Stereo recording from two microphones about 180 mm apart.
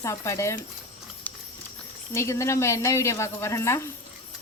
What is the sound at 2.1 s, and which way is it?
Speech, 15° left (ahead or behind).